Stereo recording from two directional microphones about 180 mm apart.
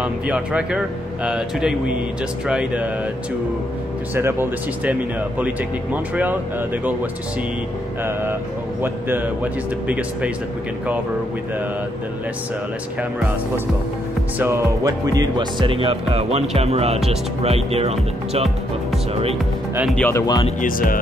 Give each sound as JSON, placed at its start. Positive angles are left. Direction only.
{"t": 0.0, "sound": "speech", "side_deg": -5}
{"t": 4.1, "sound": "speech", "side_deg": -15}
{"t": 6.8, "sound": "speech", "side_deg": -10}
{"t": 14.4, "sound": "speech", "side_deg": -15}
{"t": 19.9, "sound": "speech", "side_deg": 10}
{"t": 20.6, "sound": "speech", "side_deg": 50}